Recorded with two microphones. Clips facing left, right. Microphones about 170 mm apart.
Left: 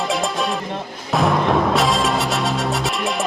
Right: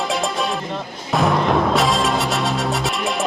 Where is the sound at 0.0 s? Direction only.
Centre (ahead or behind).